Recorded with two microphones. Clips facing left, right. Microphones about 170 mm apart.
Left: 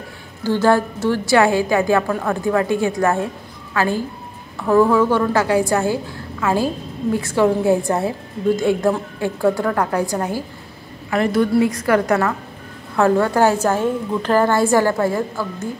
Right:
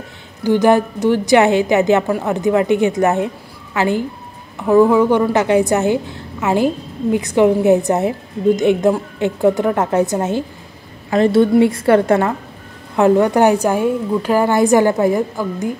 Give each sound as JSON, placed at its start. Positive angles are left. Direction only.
{"t": 0.4, "sound": "a woman's voice", "side_deg": -15}
{"t": 12.9, "sound": "a woman's voice", "side_deg": -20}